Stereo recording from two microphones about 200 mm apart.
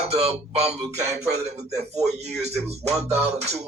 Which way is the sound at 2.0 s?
35° right (ahead or behind).